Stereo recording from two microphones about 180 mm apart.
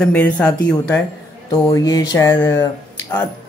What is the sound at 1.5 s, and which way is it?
Speech, 20° left (ahead or behind).